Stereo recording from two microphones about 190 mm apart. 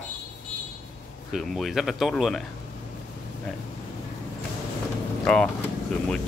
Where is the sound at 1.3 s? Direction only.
Centre (ahead or behind).